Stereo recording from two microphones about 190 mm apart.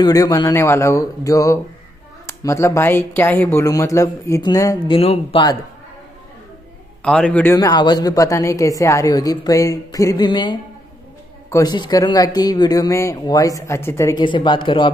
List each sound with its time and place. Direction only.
0.0 s speech: 20° left (ahead or behind)
4.9 s speech: 30° left (ahead or behind)
7.0 s speech: 5° left (ahead or behind)
7.5 s speech: 20° left (ahead or behind)